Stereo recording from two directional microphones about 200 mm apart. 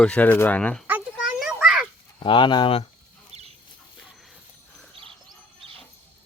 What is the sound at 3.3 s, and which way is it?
Chicken, 35° right (ahead or behind).